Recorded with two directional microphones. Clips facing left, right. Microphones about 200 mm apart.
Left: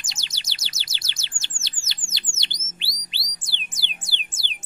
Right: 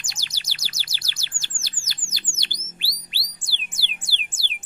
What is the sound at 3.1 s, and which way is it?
Music, 20° left (ahead or behind).